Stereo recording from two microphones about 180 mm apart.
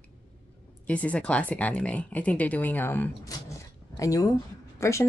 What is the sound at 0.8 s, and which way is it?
Speech, 10° left (ahead or behind).